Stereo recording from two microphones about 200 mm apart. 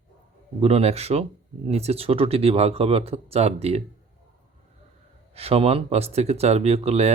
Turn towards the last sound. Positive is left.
turn(degrees=-30)  # may be behind; listen again after turning